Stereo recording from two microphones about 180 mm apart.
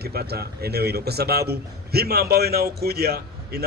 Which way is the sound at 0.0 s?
60° right (ahead or behind).